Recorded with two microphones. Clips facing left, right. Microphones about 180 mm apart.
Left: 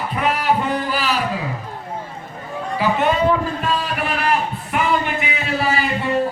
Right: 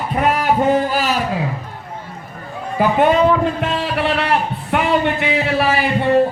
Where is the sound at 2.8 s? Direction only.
50° right (ahead or behind).